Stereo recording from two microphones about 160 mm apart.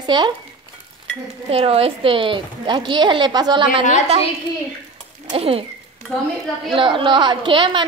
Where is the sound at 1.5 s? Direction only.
40° right (ahead or behind).